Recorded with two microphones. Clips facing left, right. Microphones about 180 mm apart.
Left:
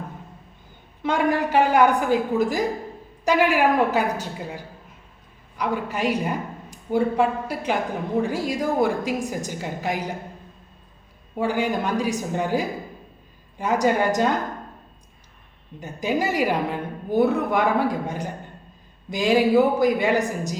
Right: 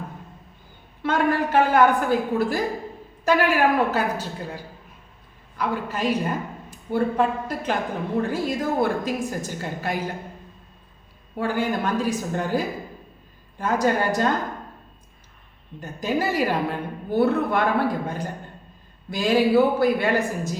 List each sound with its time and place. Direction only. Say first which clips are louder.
1.0 s a woman's voice: even; 15° left (ahead or behind)
11.3 s a woman's voice: left 1 dB; 15° left (ahead or behind)
15.8 s a woman's voice: left 1 dB; 15° left (ahead or behind)